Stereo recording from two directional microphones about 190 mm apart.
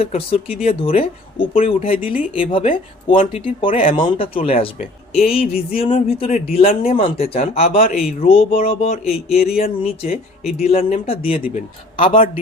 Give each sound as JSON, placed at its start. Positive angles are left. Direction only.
{"t": 0.0, "sound": "speech", "side_deg": 30}
{"t": 5.1, "sound": "music", "side_deg": 0}
{"t": 5.7, "sound": "speech", "side_deg": 30}